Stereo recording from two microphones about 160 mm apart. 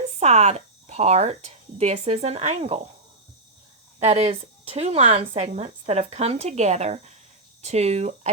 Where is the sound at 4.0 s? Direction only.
40° right (ahead or behind).